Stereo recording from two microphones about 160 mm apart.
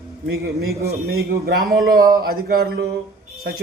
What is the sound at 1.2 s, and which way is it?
Speech, 75° right (ahead or behind).